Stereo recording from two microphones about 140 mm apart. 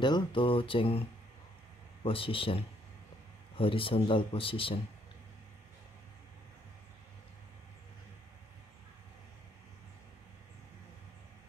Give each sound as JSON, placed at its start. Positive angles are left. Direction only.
{"t": 0.0, "sound": "speech", "side_deg": 35}
{"t": 2.0, "sound": "speech", "side_deg": 40}